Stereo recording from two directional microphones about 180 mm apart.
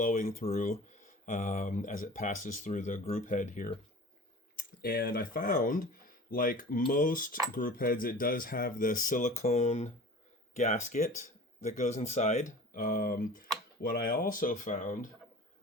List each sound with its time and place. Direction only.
0.0 s speech: 45° left (ahead or behind)
4.5 s speech: 55° left (ahead or behind)